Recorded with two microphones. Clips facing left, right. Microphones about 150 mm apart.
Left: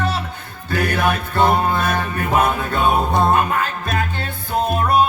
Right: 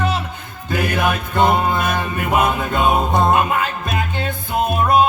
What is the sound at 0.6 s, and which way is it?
Music, 15° right (ahead or behind).